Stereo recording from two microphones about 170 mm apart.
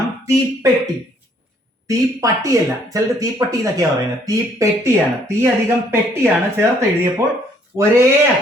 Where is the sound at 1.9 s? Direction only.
20° right (ahead or behind).